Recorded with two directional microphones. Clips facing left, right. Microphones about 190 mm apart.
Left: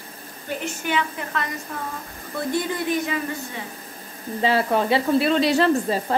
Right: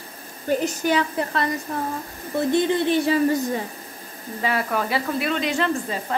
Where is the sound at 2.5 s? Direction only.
25° right (ahead or behind).